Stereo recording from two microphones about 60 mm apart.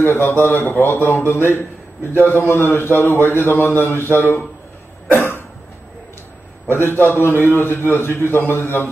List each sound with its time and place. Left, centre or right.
0.0 s a man's voice: left
5.1 s cough: left
6.7 s a man's voice: left